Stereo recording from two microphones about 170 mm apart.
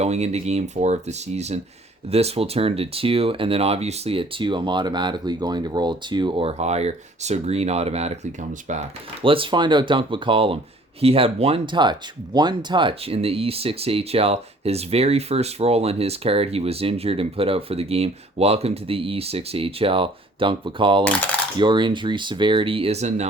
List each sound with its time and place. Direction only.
0.0 s speech: 40° right (ahead or behind)